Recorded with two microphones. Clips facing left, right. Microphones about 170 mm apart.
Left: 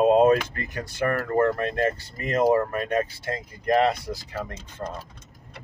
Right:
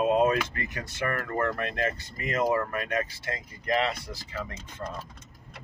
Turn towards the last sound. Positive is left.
turn(degrees=35)  # may be behind; listen again after turning